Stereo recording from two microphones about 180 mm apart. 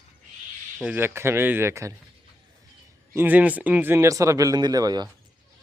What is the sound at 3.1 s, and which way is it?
Speech, 10° right (ahead or behind).